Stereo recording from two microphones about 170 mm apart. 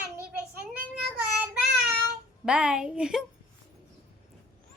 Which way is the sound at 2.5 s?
5° right (ahead or behind).